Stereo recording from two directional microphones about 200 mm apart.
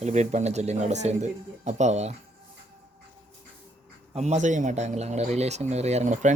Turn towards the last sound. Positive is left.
turn(degrees=-35)  # may be behind; listen again after turning